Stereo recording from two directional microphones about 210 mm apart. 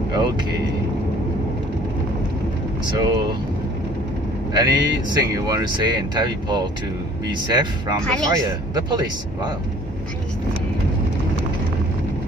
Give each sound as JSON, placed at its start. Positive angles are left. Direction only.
{"t": 2.8, "sound": "speech", "side_deg": -20}
{"t": 4.6, "sound": "speech", "side_deg": -20}